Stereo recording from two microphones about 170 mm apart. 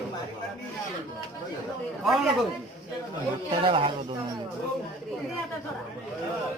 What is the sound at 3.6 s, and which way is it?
Speech, 30° right (ahead or behind).